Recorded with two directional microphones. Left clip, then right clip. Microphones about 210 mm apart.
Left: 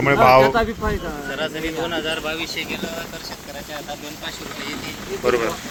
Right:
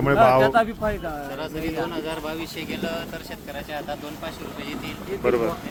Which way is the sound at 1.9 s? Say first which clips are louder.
Left 5 dB; 60° right (ahead or behind).